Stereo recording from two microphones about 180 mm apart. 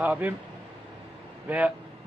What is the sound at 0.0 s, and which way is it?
Speech, 10° right (ahead or behind).